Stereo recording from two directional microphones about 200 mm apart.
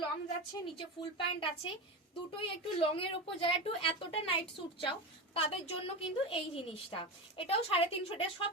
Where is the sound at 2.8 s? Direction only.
25° left (ahead or behind).